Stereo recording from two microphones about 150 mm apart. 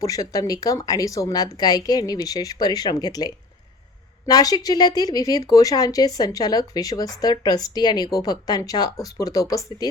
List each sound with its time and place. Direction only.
0.0 s speech: 25° left (ahead or behind)